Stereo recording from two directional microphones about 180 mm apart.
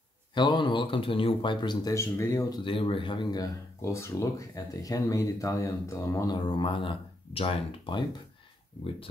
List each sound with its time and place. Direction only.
0.3 s speech: 25° left (ahead or behind)